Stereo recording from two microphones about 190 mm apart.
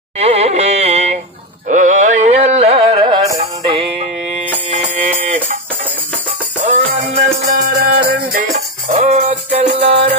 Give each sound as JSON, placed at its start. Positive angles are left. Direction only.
{"t": 0.2, "sound": "carnatic music", "side_deg": -35}
{"t": 3.3, "sound": "music", "side_deg": -30}
{"t": 6.7, "sound": "music", "side_deg": -40}